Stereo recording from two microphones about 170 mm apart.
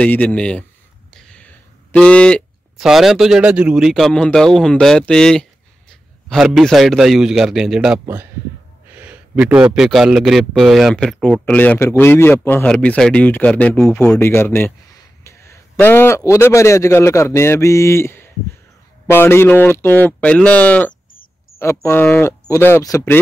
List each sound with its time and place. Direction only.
0.0 s a man's voice: 10° left (ahead or behind)